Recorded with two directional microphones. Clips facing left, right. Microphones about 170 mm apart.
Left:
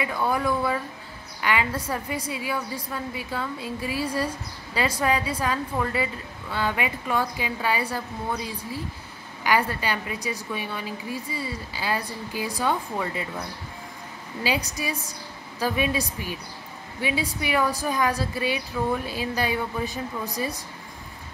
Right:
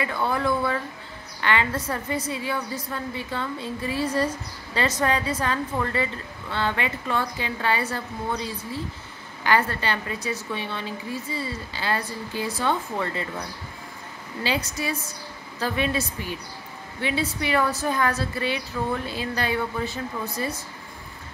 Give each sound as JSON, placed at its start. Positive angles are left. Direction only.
{"t": 0.0, "sound": "a woman's voice", "side_deg": 10}
{"t": 14.4, "sound": "a woman's voice", "side_deg": 15}